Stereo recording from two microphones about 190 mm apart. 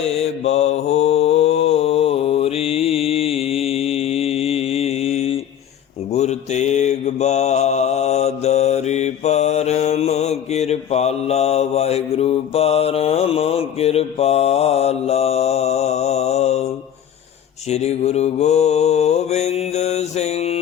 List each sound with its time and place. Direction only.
0.0 s mantra: 35° left (ahead or behind)
17.7 s mantra: 35° left (ahead or behind)